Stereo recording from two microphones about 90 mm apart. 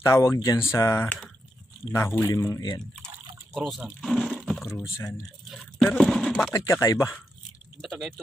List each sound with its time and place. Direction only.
0.0 s speech: 30° left (ahead or behind)
3.5 s speech: centre (ahead or behind)
4.0 s a sound: centre (ahead or behind)
4.9 s speech: 30° left (ahead or behind)
5.5 s speech: centre (ahead or behind)
6.5 s speech: 35° left (ahead or behind)
7.8 s speech: centre (ahead or behind)